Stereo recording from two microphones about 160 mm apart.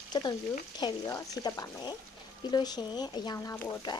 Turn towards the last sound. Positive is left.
turn(degrees=15)  # may be behind; listen again after turning